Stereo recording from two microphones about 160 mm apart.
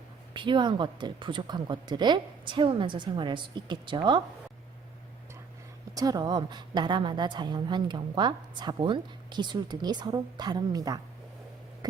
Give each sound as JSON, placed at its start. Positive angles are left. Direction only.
{"t": 0.3, "sound": "a woman's voice", "side_deg": -30}
{"t": 5.9, "sound": "a woman's voice", "side_deg": -20}